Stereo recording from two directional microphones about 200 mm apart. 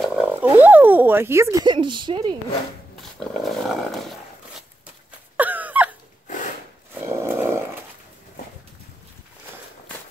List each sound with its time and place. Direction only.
0.0 s speech: 5° right (ahead or behind); by 2.3 s 25° right (ahead or behind)
3.0 s roaring cats: centre (ahead or behind)
5.4 s a sound: 10° right (ahead or behind)
6.9 s dog: 10° right (ahead or behind)